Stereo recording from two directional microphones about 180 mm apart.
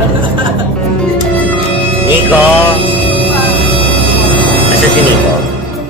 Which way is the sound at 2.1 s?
10° right (ahead or behind).